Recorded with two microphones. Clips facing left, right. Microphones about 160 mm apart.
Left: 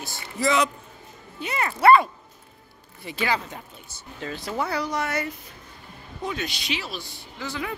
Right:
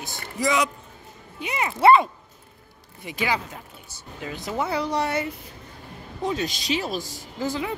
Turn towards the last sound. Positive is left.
turn(degrees=-40)  # may be behind; listen again after turning